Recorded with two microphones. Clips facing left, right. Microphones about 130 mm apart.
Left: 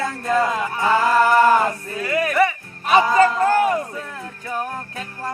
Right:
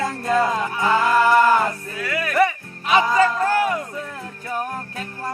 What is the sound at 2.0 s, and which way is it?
Speech, 40° left (ahead or behind).